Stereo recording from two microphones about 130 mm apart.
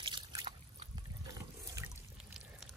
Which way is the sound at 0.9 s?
25° right (ahead or behind).